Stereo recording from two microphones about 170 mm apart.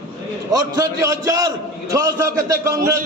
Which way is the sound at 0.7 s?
20° right (ahead or behind).